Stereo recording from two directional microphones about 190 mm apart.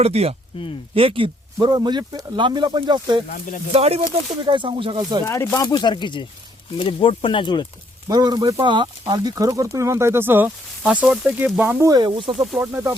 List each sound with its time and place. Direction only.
0.0 s speech: 30° right (ahead or behind)
3.2 s speech: 45° left (ahead or behind)
3.7 s speech: 30° right (ahead or behind)
5.2 s speech: 15° left (ahead or behind)
8.0 s speech: 20° right (ahead or behind)
12.4 s speech: centre (ahead or behind)